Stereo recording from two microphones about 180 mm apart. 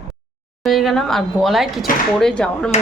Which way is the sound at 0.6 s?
Centre (ahead or behind).